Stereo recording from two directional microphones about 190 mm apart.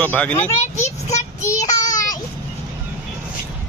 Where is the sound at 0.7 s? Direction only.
35° left (ahead or behind).